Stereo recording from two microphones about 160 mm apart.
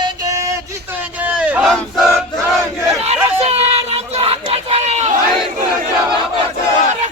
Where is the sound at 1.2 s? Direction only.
10° right (ahead or behind).